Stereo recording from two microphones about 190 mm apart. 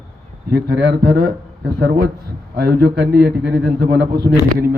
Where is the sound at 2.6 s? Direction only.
55° right (ahead or behind).